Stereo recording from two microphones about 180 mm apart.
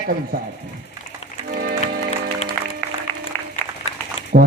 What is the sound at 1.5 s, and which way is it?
Music, 55° right (ahead or behind).